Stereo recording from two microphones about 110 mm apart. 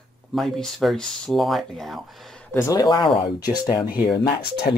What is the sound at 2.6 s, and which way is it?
Speech, 40° left (ahead or behind).